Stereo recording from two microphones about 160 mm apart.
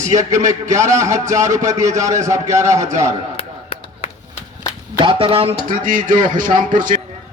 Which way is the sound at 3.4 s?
40° left (ahead or behind).